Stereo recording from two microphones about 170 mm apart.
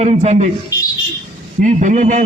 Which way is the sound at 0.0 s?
40° right (ahead or behind).